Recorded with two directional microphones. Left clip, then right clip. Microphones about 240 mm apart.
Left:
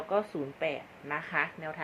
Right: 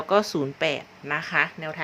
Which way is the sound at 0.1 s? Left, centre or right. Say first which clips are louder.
Right 9 dB; right.